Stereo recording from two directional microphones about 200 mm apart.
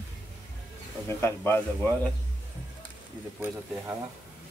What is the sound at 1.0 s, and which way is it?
Speech, 10° left (ahead or behind).